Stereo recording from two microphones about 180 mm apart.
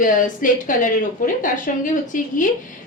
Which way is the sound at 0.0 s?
50° left (ahead or behind).